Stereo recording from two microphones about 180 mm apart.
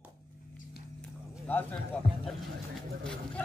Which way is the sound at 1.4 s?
10° left (ahead or behind).